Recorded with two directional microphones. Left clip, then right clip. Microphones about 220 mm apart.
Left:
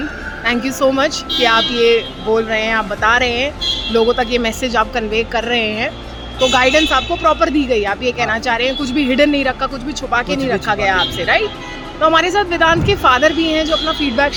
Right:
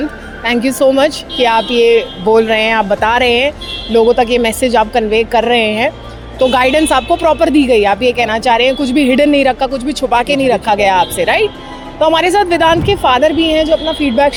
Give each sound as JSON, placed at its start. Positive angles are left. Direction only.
{"t": 0.4, "sound": "a woman's voice", "side_deg": -25}
{"t": 2.3, "sound": "speech", "side_deg": -35}
{"t": 3.9, "sound": "a woman's voice", "side_deg": -25}